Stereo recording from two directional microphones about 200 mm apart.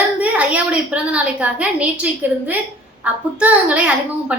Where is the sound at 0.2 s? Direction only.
5° right (ahead or behind).